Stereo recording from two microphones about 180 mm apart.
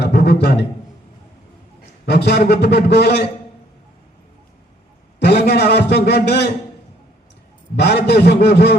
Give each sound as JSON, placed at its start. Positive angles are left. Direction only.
{"t": 0.0, "sound": "a sound", "side_deg": 65}
{"t": 2.0, "sound": "a man's voice", "side_deg": 65}
{"t": 5.2, "sound": "a man's voice", "side_deg": 65}
{"t": 7.8, "sound": "a man's voice", "side_deg": 65}